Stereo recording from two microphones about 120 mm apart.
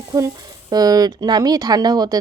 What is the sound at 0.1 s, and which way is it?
A woman's voice, 35° right (ahead or behind).